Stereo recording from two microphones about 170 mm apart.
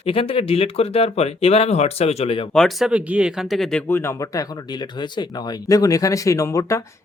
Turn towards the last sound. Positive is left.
turn(degrees=20)  # may be behind; listen again after turning